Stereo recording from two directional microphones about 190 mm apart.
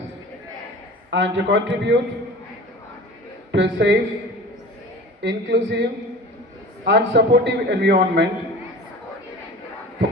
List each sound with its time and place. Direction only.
1.1 s a man's voice: 70° right (ahead or behind)
3.5 s a man's voice: 70° right (ahead or behind)
5.2 s a man's voice: 65° right (ahead or behind)